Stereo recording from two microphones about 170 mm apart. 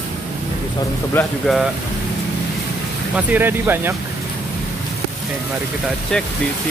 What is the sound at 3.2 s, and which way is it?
Speech, 10° right (ahead or behind).